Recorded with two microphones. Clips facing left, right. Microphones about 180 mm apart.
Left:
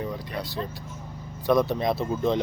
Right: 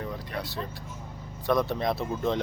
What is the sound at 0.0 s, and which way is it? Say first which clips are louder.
Vehicle: left 3 dB; centre (ahead or behind).